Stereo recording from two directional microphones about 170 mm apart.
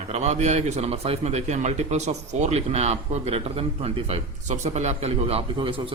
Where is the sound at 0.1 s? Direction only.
40° right (ahead or behind).